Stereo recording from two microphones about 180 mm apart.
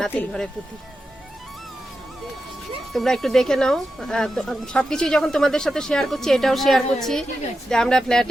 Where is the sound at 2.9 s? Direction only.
Centre (ahead or behind).